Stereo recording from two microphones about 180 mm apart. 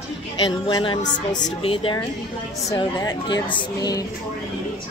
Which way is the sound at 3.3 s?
25° left (ahead or behind).